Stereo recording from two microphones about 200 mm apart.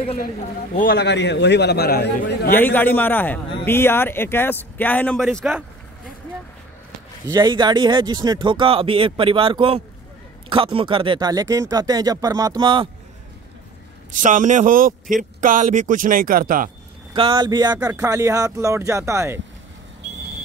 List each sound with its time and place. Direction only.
0.7 s a man's voice: 50° left (ahead or behind)
2.5 s a man's voice: 10° left (ahead or behind)
7.2 s speech: 20° right (ahead or behind)
14.1 s a man's voice: 40° right (ahead or behind)
17.1 s speech: 25° right (ahead or behind)